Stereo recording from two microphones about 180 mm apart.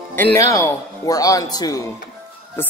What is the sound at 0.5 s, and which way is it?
Speech, 20° left (ahead or behind).